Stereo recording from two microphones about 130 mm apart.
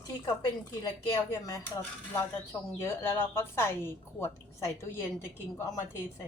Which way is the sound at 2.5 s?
20° left (ahead or behind).